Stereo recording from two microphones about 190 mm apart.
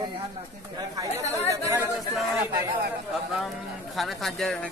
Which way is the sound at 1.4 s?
15° right (ahead or behind).